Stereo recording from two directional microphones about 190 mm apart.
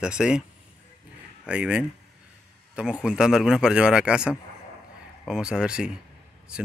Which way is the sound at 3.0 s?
5° right (ahead or behind).